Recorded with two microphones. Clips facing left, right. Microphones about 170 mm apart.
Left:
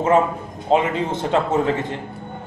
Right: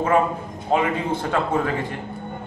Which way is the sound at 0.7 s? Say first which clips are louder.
Left 2 dB; 20° left (ahead or behind).